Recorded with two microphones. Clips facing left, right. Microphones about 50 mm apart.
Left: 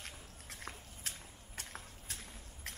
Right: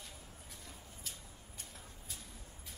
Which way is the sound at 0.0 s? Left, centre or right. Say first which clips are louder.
Left 2 dB; left.